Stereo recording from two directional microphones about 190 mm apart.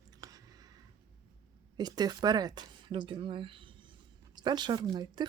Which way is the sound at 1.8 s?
20° right (ahead or behind).